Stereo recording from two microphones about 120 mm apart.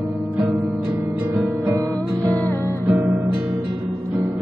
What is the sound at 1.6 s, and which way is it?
Music, 25° right (ahead or behind).